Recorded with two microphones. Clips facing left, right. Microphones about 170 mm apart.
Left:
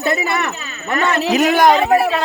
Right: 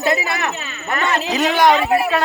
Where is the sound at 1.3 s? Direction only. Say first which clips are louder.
Left 2 dB; 50° left (ahead or behind).